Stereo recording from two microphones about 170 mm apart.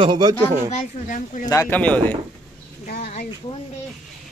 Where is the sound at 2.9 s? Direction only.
60° left (ahead or behind).